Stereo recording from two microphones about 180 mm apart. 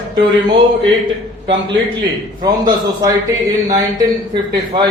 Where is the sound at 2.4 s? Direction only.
20° right (ahead or behind).